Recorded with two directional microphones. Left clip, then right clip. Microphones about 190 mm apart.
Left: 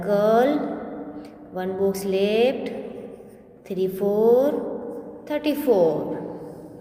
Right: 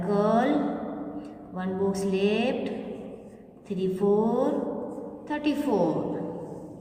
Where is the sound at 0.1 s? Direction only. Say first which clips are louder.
Left 6 dB; 35° left (ahead or behind).